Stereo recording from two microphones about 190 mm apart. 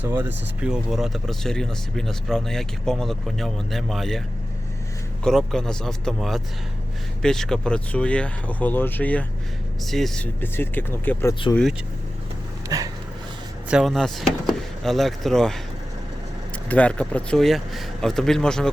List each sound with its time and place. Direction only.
0.2 s speech: 10° right (ahead or behind)
5.2 s speech: centre (ahead or behind)
12.6 s a sound: 15° right (ahead or behind)
13.7 s speech: centre (ahead or behind)
16.6 s speech: 5° left (ahead or behind)